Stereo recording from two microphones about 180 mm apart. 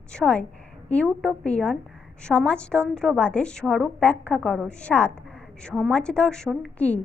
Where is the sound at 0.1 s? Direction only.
5° left (ahead or behind).